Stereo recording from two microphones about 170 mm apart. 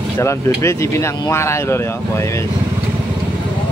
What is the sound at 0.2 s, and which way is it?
Speech, 15° left (ahead or behind).